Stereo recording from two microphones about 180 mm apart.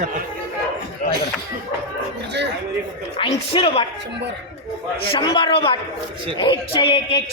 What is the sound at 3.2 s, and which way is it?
Speech, 30° left (ahead or behind).